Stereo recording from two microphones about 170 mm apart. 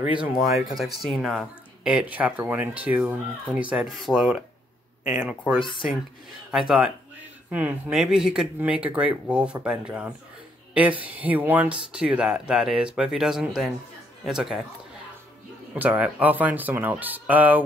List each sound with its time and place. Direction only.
0.2 s speech: centre (ahead or behind)
5.6 s speech: 30° left (ahead or behind)
7.5 s speech: 5° right (ahead or behind)
15.7 s speech: 10° right (ahead or behind)